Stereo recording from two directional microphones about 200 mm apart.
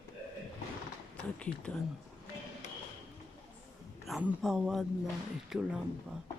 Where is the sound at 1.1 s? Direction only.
5° left (ahead or behind).